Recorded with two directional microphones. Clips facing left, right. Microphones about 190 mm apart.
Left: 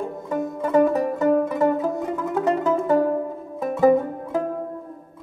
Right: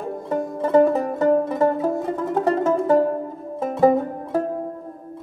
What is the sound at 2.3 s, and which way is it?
Music, 35° right (ahead or behind).